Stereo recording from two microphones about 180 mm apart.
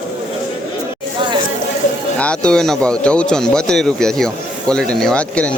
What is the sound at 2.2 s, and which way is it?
Speech, 5° left (ahead or behind).